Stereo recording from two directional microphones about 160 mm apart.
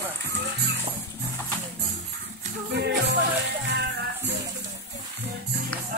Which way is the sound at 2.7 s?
90° right.